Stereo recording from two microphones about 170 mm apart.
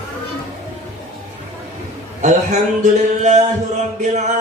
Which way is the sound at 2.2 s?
45° right (ahead or behind).